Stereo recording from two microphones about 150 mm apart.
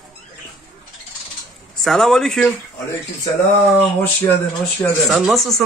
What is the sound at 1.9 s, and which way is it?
Speech, centre (ahead or behind).